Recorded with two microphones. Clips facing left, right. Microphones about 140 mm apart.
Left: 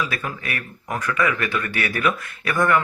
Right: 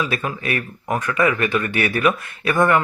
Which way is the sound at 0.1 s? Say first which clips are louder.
Right 5 dB; 25° right (ahead or behind).